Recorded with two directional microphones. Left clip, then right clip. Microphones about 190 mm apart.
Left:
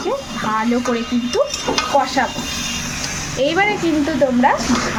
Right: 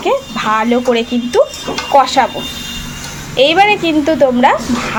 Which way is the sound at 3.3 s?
15° right (ahead or behind).